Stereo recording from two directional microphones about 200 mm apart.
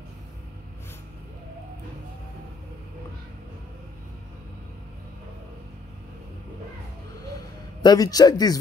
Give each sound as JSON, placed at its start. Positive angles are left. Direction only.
{"t": 7.8, "sound": "a man's voice", "side_deg": 20}